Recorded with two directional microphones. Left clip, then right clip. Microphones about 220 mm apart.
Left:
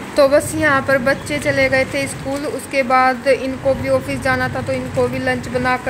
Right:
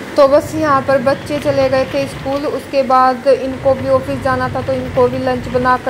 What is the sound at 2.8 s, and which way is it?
Speech, 20° left (ahead or behind).